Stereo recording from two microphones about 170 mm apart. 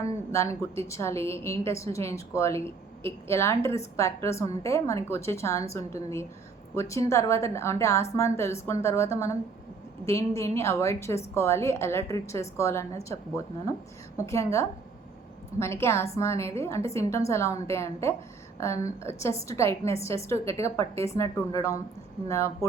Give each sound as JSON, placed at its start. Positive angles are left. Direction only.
{"t": 0.0, "sound": "a woman's voice", "side_deg": 15}